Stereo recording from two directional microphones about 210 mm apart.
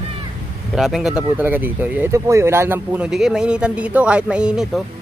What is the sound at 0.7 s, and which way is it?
A man's voice, centre (ahead or behind).